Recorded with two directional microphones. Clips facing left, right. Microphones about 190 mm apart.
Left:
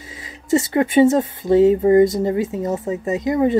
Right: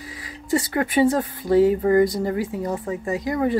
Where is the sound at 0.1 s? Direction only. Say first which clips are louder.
Left 5 dB; 25° left (ahead or behind).